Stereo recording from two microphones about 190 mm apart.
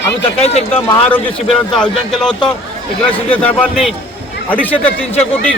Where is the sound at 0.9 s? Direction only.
10° left (ahead or behind).